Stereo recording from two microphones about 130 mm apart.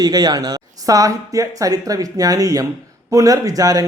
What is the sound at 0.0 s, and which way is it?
A woman's voice, 30° right (ahead or behind).